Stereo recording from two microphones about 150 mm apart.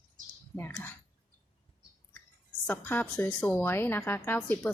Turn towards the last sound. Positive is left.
turn(degrees=10)  # may be behind; listen again after turning